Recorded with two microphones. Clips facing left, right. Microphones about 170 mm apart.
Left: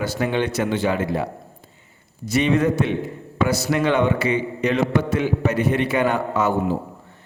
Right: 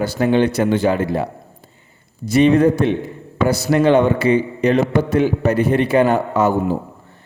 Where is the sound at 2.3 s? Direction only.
35° right (ahead or behind).